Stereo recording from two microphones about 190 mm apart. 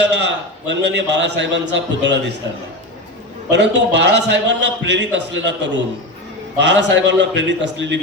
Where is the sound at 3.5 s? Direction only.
65° right (ahead or behind).